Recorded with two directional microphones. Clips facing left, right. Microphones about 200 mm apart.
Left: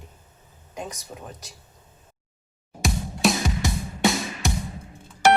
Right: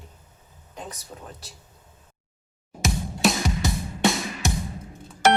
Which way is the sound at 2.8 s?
Centre (ahead or behind).